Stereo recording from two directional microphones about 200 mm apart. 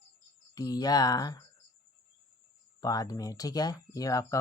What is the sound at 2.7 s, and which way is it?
Speech, 20° left (ahead or behind).